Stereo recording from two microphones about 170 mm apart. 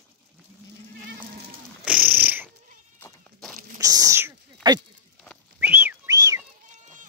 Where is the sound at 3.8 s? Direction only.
20° right (ahead or behind).